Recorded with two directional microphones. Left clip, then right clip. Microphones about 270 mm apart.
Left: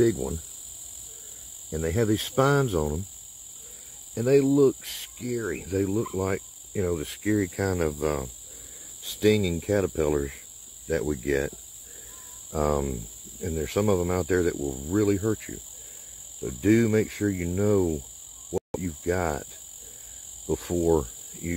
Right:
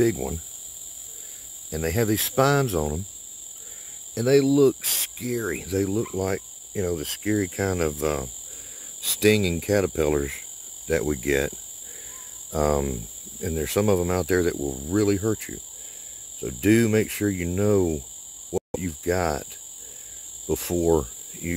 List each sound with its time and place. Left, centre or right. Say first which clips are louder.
0.0 s speech: right 1 dB; centre
1.7 s speech: right 1 dB; centre
4.1 s speech: right 2 dB; centre
12.5 s speech: right 3 dB; centre
18.5 s cricket: right 2 dB; centre
20.4 s cricket: right 2 dB; centre